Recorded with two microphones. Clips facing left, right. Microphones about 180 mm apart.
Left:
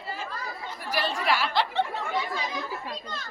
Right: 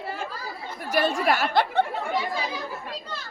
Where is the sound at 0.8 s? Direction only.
45° right (ahead or behind).